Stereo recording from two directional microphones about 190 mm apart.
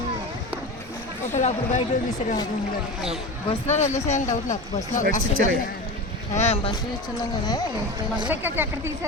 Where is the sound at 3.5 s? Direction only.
35° left (ahead or behind).